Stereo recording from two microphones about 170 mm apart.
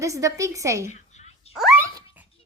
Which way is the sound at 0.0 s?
20° right (ahead or behind).